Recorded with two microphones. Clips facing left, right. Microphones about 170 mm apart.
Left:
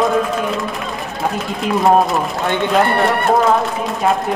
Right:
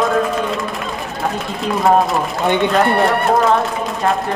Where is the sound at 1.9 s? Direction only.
Centre (ahead or behind).